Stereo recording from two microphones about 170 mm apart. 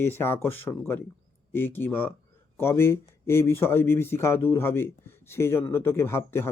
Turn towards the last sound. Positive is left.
turn(degrees=15)  # may be behind; listen again after turning